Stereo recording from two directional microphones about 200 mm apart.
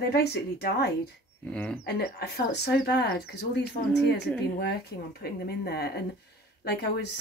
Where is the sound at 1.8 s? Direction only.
55° left (ahead or behind).